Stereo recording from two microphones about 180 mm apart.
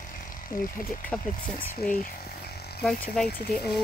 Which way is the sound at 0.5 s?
50° left (ahead or behind).